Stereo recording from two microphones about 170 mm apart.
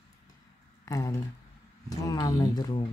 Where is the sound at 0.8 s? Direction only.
20° left (ahead or behind).